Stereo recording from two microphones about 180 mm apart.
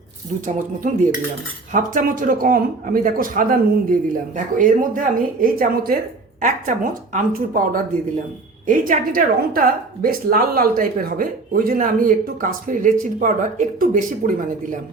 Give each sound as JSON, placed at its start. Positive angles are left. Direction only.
{"t": 0.4, "sound": "a woman's voice", "side_deg": -45}